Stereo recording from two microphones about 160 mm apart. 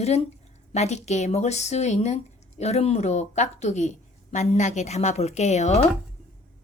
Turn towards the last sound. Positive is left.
turn(degrees=45)  # may be behind; listen again after turning